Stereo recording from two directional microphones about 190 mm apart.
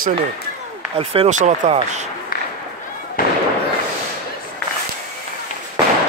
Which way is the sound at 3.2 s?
50° left (ahead or behind).